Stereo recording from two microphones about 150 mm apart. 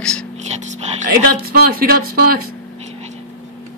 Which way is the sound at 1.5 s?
85° right.